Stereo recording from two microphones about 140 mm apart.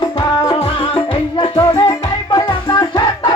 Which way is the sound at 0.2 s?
40° left (ahead or behind).